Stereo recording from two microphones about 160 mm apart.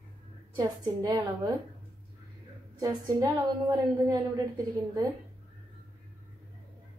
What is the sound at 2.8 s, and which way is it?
A woman's voice, 25° right (ahead or behind).